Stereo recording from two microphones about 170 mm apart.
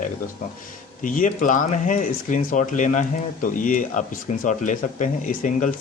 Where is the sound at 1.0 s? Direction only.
50° left (ahead or behind).